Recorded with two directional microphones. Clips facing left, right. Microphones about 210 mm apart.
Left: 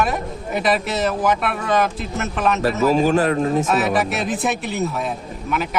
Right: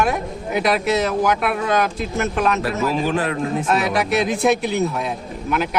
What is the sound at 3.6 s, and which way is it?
Speech, centre (ahead or behind).